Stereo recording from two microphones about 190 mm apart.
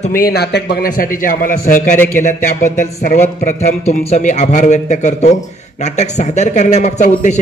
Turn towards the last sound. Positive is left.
turn(degrees=40)  # may be behind; listen again after turning